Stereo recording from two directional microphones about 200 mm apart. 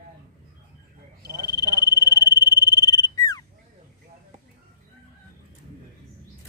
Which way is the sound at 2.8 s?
20° left (ahead or behind).